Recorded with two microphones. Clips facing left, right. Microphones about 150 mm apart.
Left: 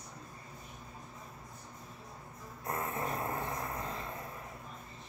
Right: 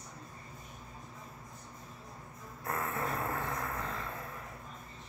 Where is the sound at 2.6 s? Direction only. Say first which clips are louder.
Right 1 dB; 20° left (ahead or behind).